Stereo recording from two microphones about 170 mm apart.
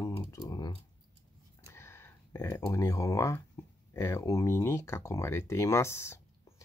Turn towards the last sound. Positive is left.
turn(degrees=15)  # may be behind; listen again after turning